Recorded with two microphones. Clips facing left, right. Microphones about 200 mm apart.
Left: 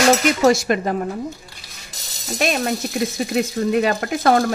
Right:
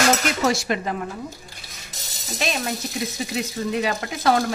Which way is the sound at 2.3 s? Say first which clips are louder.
Left 5 dB; 55° left (ahead or behind).